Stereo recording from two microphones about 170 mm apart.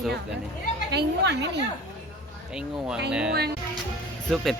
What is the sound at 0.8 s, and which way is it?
Speech, 90° right.